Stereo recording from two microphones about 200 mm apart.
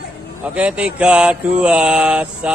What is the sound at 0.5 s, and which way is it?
Mantra, 5° right (ahead or behind).